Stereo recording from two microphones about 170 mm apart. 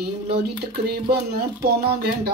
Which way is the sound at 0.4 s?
75° right (ahead or behind).